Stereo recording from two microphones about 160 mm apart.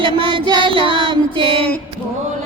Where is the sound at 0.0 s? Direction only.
30° right (ahead or behind).